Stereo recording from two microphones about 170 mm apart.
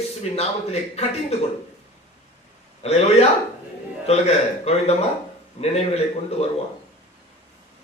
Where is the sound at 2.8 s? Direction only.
40° left (ahead or behind).